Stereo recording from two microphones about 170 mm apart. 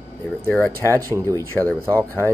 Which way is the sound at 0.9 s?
15° right (ahead or behind).